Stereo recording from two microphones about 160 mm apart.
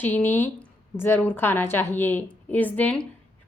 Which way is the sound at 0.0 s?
15° left (ahead or behind).